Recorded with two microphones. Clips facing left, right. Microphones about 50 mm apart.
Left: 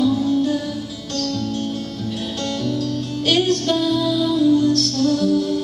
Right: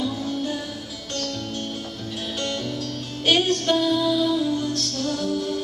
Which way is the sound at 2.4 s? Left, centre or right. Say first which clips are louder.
Left 7 dB; right.